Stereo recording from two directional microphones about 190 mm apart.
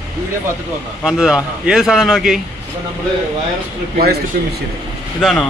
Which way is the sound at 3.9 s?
55° right (ahead or behind).